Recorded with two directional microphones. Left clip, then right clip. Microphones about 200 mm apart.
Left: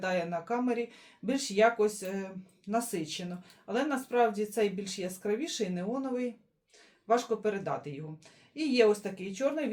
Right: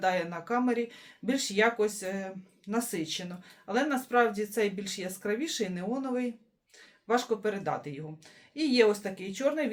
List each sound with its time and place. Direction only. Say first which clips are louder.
0.0 s speech: right 3 dB; 20° right (ahead or behind)